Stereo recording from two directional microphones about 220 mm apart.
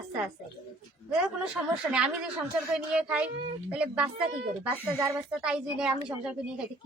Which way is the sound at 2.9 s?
5° right (ahead or behind).